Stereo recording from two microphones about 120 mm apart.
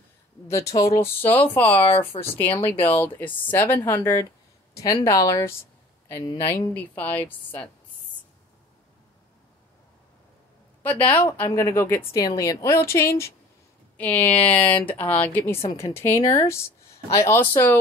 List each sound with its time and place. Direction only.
0.7 s a woman's voice: 25° left (ahead or behind)
6.7 s speech: 15° left (ahead or behind)
10.8 s a woman's voice: 15° left (ahead or behind)